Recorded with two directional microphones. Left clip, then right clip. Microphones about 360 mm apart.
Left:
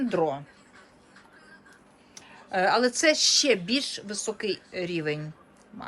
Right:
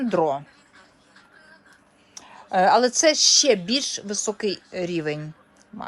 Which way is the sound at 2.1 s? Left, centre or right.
Centre.